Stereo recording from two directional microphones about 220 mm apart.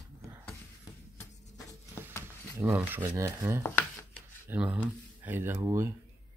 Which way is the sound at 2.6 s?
10° right (ahead or behind).